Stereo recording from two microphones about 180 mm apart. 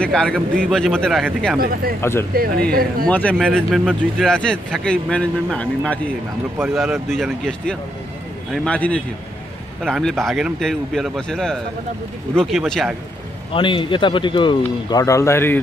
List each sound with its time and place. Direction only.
0.0 s speech: 5° left (ahead or behind)
2.0 s a man's voice: 15° left (ahead or behind)
2.7 s speech: 55° right (ahead or behind)
3.1 s a man's voice: 10° left (ahead or behind)
13.5 s a man's voice: 30° left (ahead or behind); by 15.6 s 15° left (ahead or behind)